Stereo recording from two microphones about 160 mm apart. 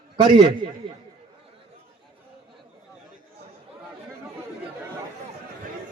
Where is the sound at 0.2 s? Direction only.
30° right (ahead or behind).